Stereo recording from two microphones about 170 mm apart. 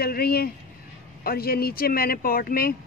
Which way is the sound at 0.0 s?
65° left (ahead or behind).